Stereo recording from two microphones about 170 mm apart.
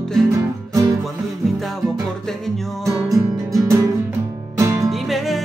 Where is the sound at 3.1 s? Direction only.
20° right (ahead or behind).